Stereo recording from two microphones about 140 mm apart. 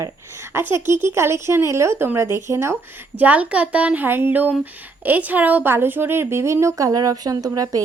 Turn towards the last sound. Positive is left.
turn(degrees=-25)  # may be behind; listen again after turning